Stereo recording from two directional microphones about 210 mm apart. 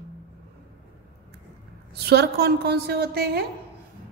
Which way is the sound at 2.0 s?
50° right (ahead or behind).